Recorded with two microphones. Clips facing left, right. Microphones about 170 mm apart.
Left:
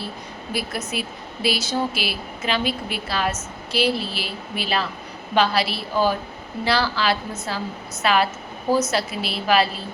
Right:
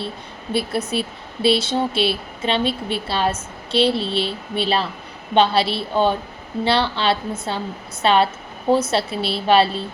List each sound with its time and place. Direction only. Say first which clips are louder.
0.5 s a woman's voice: right 6 dB; 30° right (ahead or behind)